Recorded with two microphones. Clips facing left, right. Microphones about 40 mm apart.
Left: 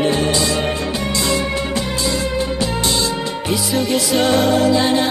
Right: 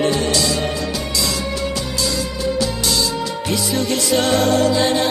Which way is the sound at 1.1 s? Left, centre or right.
Left.